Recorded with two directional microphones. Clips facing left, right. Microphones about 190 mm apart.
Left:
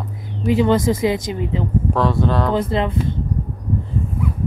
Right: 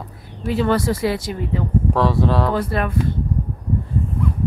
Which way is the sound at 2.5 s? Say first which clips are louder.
Left 2 dB; 20° left (ahead or behind).